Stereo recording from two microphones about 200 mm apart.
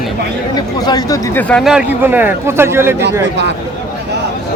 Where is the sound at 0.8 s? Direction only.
20° left (ahead or behind).